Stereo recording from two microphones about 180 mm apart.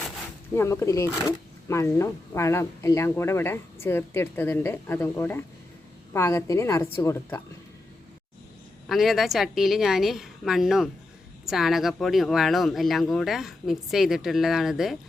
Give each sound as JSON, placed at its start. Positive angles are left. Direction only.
{"t": 0.5, "sound": "speech", "side_deg": 15}
{"t": 8.9, "sound": "speech", "side_deg": 0}